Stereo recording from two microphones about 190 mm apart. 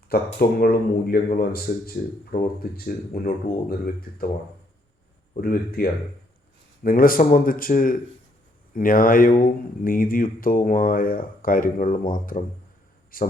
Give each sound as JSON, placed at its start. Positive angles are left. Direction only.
{"t": 0.3, "sound": "speech", "side_deg": 50}
{"t": 5.4, "sound": "a man's voice", "side_deg": 50}